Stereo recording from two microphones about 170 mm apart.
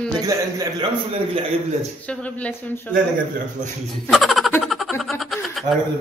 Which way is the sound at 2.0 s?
10° left (ahead or behind).